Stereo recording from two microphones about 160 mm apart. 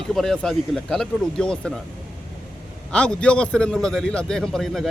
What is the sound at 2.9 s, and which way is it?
A man's voice, 5° left (ahead or behind).